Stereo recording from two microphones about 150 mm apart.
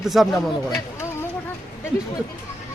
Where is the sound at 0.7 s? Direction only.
15° left (ahead or behind).